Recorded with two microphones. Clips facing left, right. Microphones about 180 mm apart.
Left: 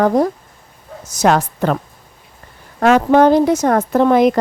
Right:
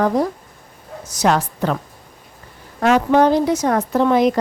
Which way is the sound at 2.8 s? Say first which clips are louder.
Left 3 dB; 50° left (ahead or behind).